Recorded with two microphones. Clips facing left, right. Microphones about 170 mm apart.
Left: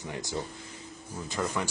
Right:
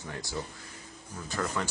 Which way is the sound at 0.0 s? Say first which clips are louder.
Left 2 dB; 20° left (ahead or behind).